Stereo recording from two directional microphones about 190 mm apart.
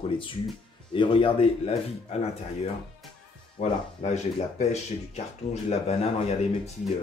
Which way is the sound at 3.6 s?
35° left (ahead or behind).